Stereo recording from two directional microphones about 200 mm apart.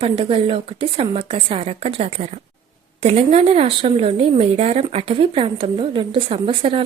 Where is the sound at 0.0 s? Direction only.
25° right (ahead or behind).